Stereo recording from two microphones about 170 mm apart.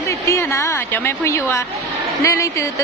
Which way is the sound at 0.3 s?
15° left (ahead or behind).